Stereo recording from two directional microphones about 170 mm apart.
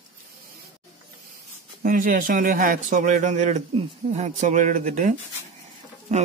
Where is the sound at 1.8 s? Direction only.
50° right (ahead or behind).